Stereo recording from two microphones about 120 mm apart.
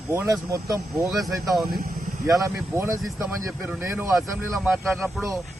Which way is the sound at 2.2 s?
25° right (ahead or behind).